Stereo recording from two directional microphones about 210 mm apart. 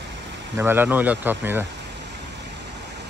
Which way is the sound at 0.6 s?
10° right (ahead or behind).